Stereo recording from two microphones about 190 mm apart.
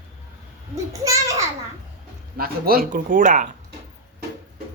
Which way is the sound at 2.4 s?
50° right (ahead or behind).